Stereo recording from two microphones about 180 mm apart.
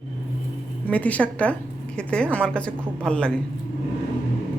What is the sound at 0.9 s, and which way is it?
A woman's voice, 10° left (ahead or behind).